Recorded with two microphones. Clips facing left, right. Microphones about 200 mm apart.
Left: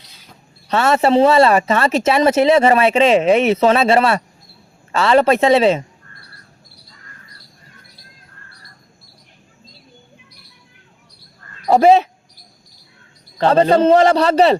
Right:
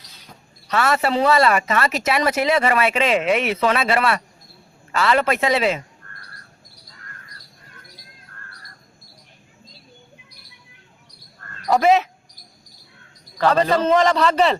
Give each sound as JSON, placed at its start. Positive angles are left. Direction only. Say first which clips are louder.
{"t": 0.7, "sound": "speech", "louder": "left 6 dB", "side_deg": 25}
{"t": 11.7, "sound": "a man's voice", "louder": "left 5 dB", "side_deg": 30}
{"t": 13.4, "sound": "a man's voice", "louder": "left 5 dB", "side_deg": 30}